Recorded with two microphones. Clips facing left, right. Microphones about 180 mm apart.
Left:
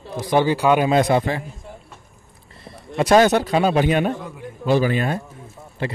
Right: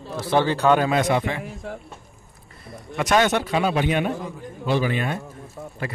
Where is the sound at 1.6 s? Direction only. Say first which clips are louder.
Right 6 dB; 75° right (ahead or behind).